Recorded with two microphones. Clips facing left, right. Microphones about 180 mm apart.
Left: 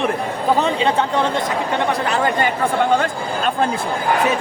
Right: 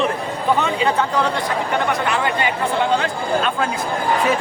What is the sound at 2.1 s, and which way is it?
Speech, 40° left (ahead or behind).